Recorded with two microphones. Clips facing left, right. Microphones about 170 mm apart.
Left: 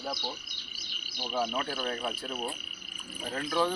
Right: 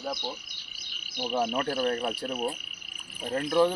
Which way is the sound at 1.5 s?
50° right (ahead or behind).